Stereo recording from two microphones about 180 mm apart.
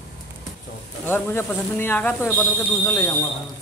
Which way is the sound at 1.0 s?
10° left (ahead or behind).